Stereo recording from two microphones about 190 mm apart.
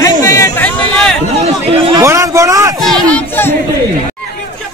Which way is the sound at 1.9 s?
15° right (ahead or behind).